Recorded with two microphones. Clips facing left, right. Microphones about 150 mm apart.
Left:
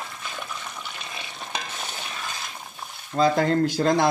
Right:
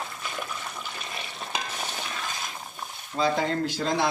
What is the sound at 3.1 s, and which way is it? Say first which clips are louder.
Speech: left 5 dB; 50° left (ahead or behind).